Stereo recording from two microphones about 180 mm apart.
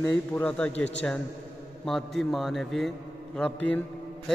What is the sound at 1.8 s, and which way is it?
A man's voice, centre (ahead or behind).